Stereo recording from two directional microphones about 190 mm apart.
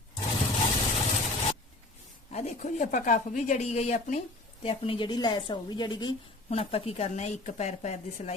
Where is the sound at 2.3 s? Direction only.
40° left (ahead or behind).